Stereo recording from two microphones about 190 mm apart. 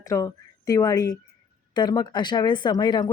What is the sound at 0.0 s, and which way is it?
A woman's voice, 15° left (ahead or behind).